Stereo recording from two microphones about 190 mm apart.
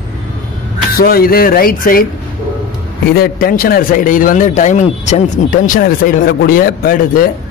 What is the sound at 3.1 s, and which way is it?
Speech, 50° left (ahead or behind).